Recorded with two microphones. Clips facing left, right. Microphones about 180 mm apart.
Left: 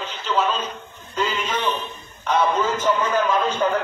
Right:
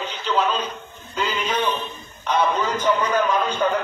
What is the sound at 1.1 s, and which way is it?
A man's voice, centre (ahead or behind).